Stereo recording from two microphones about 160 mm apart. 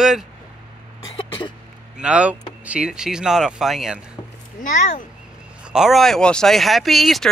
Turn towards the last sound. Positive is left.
turn(degrees=0)  # may be behind; listen again after turning